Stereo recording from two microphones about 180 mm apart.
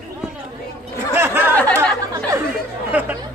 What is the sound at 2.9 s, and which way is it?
Chatter, 10° right (ahead or behind).